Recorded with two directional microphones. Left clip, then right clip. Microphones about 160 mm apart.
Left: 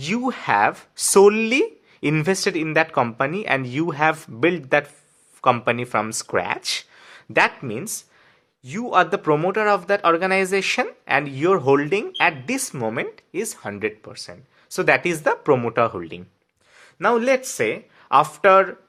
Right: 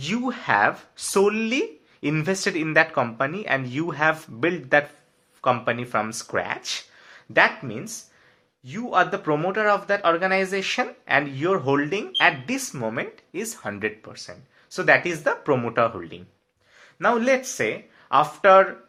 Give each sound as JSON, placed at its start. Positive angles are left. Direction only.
{"t": 0.0, "sound": "speech", "side_deg": 35}